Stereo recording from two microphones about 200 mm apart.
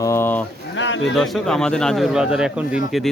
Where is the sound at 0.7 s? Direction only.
70° left (ahead or behind).